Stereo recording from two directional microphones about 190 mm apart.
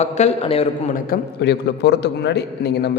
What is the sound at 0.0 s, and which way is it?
Speech, 35° left (ahead or behind).